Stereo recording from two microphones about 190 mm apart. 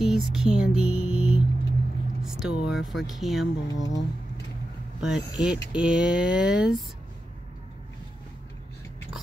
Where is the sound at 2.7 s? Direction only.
Centre (ahead or behind).